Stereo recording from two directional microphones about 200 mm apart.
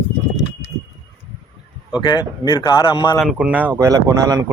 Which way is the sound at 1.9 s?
20° left (ahead or behind).